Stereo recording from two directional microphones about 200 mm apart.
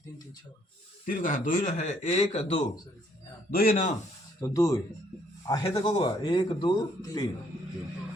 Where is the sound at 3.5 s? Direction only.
45° left (ahead or behind).